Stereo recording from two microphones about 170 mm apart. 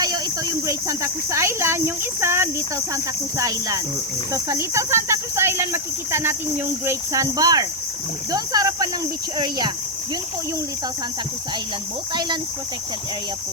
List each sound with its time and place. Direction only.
0.7 s speech: 20° right (ahead or behind)
2.9 s cricket: 20° right (ahead or behind)
4.3 s speech: 20° right (ahead or behind)
6.8 s cricket: 20° right (ahead or behind)